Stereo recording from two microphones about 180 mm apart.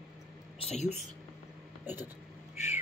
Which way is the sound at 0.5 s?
35° left (ahead or behind).